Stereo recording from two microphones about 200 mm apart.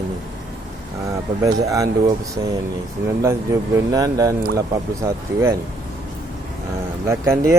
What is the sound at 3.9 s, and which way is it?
Speech, 15° right (ahead or behind).